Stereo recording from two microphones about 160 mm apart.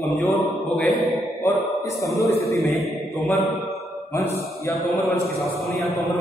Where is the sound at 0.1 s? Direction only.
Centre (ahead or behind).